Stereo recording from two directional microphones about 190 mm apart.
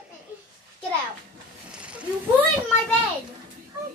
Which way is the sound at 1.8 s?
5° right (ahead or behind).